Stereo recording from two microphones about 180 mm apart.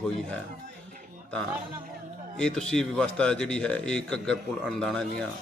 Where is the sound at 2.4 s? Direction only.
5° left (ahead or behind).